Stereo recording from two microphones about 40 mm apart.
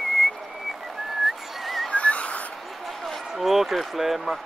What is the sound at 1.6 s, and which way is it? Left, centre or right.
Whistle, centre.